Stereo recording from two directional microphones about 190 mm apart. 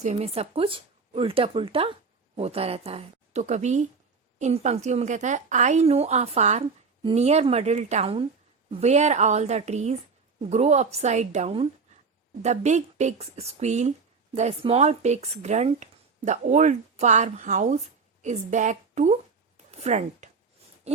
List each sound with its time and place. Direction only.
0.0 s a woman's voice: 35° right (ahead or behind)